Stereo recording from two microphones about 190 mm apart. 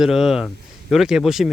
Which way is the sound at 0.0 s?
Centre (ahead or behind).